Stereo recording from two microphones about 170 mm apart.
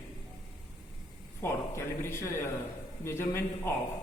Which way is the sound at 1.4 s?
15° left (ahead or behind).